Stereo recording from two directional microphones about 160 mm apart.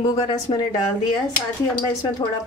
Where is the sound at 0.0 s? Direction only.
25° left (ahead or behind).